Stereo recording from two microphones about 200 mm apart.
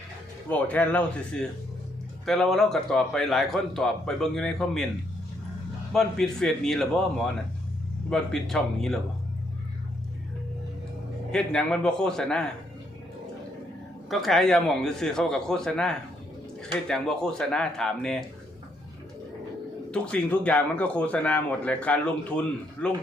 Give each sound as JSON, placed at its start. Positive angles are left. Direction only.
{"t": 0.4, "sound": "a man's voice", "side_deg": 10}
{"t": 5.9, "sound": "a man's voice", "side_deg": 0}
{"t": 11.3, "sound": "a man's voice", "side_deg": 5}
{"t": 14.1, "sound": "a man's voice", "side_deg": 0}
{"t": 19.9, "sound": "speech", "side_deg": 5}